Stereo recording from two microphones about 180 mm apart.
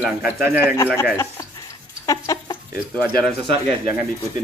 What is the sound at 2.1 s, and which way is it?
Chicken, 20° left (ahead or behind).